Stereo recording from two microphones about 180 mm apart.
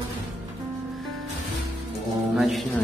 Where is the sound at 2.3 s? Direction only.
Centre (ahead or behind).